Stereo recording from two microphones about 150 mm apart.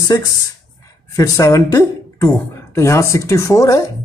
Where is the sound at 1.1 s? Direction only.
20° left (ahead or behind).